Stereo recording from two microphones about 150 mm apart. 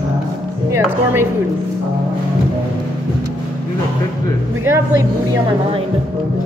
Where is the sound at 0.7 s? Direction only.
15° right (ahead or behind).